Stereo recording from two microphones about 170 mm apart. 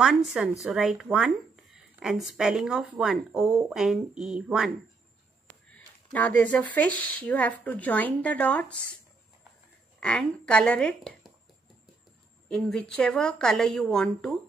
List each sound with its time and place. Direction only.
0.0 s speech: centre (ahead or behind)
6.1 s a woman's voice: 10° left (ahead or behind)
9.9 s speech: 5° left (ahead or behind)
12.4 s speech: 5° left (ahead or behind)